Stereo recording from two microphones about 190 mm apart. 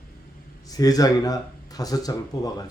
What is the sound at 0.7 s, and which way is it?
A man's voice, 20° left (ahead or behind).